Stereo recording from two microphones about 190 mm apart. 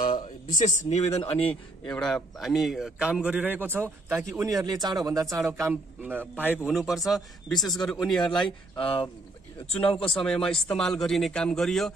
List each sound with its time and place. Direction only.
0.0 s speech: 45° left (ahead or behind)
1.9 s a man's voice: 5° left (ahead or behind)
4.2 s a man's voice: centre (ahead or behind)
4.5 s a man's voice: 20° right (ahead or behind); by 8.5 s centre (ahead or behind)
8.7 s speech: 25° left (ahead or behind)
10.2 s a man's voice: 5° left (ahead or behind)